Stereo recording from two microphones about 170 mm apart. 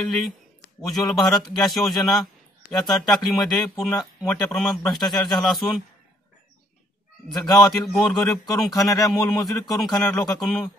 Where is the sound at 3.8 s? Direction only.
10° left (ahead or behind).